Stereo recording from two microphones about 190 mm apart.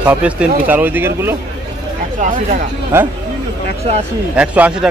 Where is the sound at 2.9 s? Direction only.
10° right (ahead or behind).